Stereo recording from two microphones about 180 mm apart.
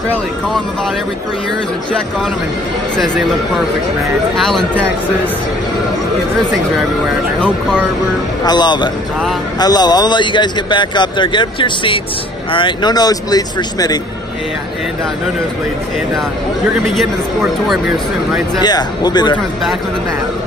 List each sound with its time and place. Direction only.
4.4 s speech: centre (ahead or behind)
8.5 s speech: 25° left (ahead or behind)
16.9 s speech: centre (ahead or behind)
18.6 s speech: 25° left (ahead or behind)